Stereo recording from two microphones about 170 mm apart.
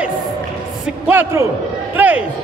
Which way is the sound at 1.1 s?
15° right (ahead or behind).